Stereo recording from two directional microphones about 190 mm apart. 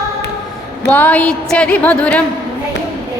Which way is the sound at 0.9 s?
10° left (ahead or behind).